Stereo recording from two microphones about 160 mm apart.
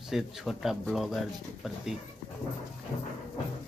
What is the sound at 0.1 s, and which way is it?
Speech, centre (ahead or behind).